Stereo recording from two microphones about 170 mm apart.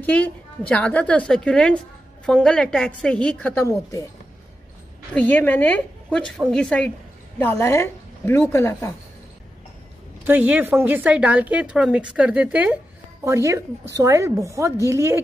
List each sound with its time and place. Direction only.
0.0 s a woman's voice: 10° left (ahead or behind)
5.1 s a woman's voice: 10° left (ahead or behind)
10.2 s a woman's voice: 10° right (ahead or behind)